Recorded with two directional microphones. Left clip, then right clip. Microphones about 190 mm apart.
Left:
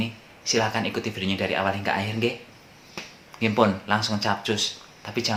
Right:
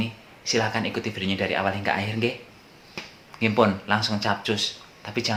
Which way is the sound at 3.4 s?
Centre (ahead or behind).